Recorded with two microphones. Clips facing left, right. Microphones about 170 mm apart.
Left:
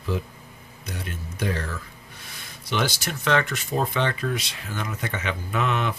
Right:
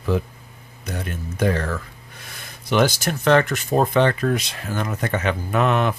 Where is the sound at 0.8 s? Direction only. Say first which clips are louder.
Right 6 dB; 50° right (ahead or behind).